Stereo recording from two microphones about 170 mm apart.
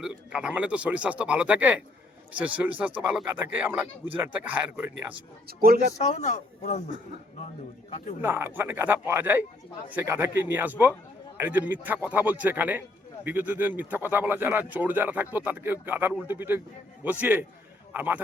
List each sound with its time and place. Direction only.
0.0 s speech: 5° right (ahead or behind)
5.5 s speech: 60° right (ahead or behind)
6.0 s speech: 40° left (ahead or behind)
8.2 s a man's voice: 15° right (ahead or behind)